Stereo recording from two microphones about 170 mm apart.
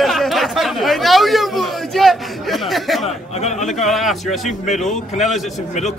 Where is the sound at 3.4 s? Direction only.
40° left (ahead or behind).